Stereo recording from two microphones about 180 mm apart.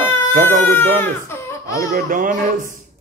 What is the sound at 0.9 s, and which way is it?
Speech, 10° left (ahead or behind).